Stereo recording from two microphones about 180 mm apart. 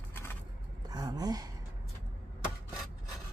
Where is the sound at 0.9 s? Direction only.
20° right (ahead or behind).